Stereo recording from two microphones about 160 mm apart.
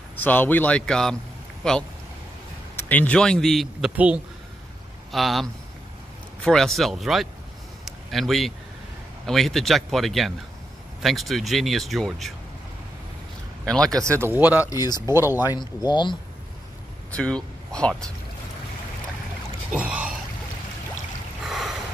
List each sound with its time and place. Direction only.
0.2 s speech: 10° left (ahead or behind)
7.8 s a sound: centre (ahead or behind)
9.2 s speech: centre (ahead or behind)
13.7 s speech: 5° left (ahead or behind)
14.2 s speech: 10° right (ahead or behind)
14.7 s speech: 25° left (ahead or behind)
15.0 s speech: 15° right (ahead or behind)
15.4 s speech: 25° left (ahead or behind)
17.1 s speech: 5° left (ahead or behind)
19.7 s speech: 10° right (ahead or behind)
21.5 s a sound: centre (ahead or behind)